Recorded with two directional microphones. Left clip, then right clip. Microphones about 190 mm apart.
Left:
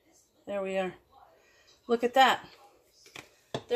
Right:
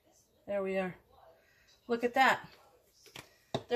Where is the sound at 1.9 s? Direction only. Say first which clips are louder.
Left 5 dB; 45° left (ahead or behind).